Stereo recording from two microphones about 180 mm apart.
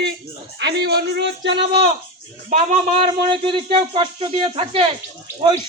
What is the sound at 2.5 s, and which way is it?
Speech, 35° right (ahead or behind).